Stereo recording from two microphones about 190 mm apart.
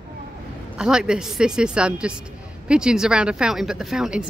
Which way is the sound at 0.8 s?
5° right (ahead or behind).